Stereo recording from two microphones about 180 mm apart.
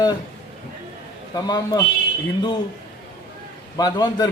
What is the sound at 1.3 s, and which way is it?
Speech, 20° left (ahead or behind).